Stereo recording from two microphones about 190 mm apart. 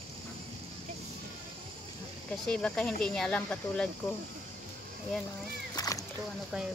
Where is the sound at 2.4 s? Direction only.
5° left (ahead or behind).